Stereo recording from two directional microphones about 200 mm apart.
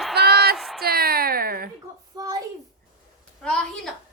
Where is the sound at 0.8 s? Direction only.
50° right (ahead or behind).